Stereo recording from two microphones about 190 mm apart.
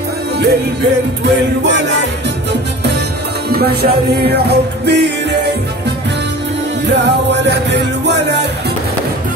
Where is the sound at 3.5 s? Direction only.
55° right (ahead or behind).